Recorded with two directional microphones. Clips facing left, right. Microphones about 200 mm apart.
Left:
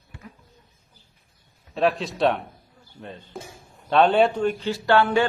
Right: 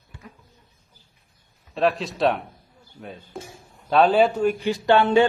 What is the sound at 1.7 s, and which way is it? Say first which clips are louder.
A man's voice: even; centre (ahead or behind).